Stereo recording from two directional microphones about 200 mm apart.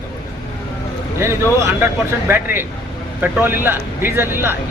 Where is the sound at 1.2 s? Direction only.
15° right (ahead or behind).